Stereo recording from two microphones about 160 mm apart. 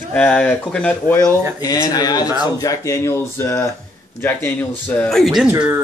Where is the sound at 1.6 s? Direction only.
25° left (ahead or behind); by 5.4 s centre (ahead or behind).